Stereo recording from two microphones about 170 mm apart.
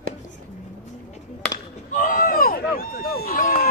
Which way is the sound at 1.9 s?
55° left (ahead or behind).